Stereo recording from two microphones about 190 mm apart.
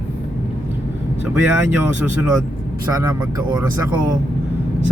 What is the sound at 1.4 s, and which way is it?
Speech, 5° right (ahead or behind).